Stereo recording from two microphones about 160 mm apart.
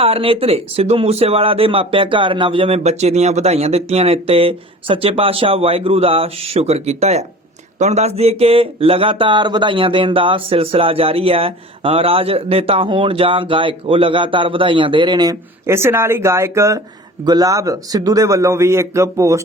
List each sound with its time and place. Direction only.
0.0 s a man's voice: 35° right (ahead or behind); by 19.4 s 20° right (ahead or behind)